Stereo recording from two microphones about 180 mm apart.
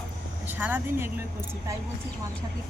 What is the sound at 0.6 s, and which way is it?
Speech, 10° right (ahead or behind).